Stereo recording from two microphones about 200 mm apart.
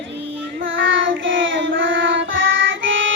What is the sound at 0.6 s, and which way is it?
Child singing, 70° right (ahead or behind).